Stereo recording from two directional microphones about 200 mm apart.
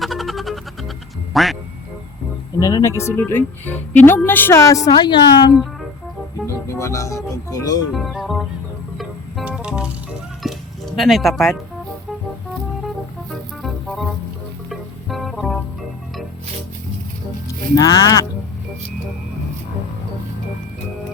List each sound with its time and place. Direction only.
0.0 s music: centre (ahead or behind)
2.6 s a woman's voice: 20° left (ahead or behind)
7.9 s speech: centre (ahead or behind)
9.0 s music: 5° right (ahead or behind)
10.4 s a sound: centre (ahead or behind)
10.9 s speech: centre (ahead or behind)
13.3 s music: centre (ahead or behind)
17.7 s speech: 15° left (ahead or behind)